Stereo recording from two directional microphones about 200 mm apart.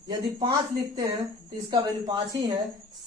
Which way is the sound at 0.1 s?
20° right (ahead or behind).